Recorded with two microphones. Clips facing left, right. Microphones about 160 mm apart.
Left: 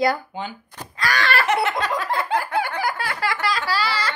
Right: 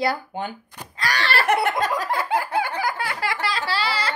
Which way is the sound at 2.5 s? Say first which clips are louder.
Even; 30° right (ahead or behind).